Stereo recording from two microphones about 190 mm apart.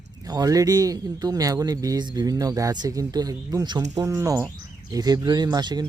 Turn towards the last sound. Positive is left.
turn(degrees=-20)  # may be behind; listen again after turning